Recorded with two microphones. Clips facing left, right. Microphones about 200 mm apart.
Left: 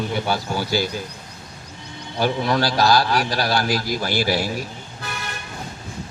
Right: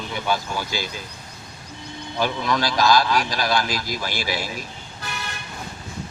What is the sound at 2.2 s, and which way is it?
A man's voice, 35° left (ahead or behind).